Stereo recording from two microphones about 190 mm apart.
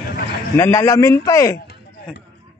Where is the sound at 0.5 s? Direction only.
15° left (ahead or behind).